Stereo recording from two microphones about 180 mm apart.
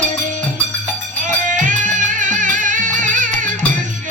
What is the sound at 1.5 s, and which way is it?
Music, 45° right (ahead or behind).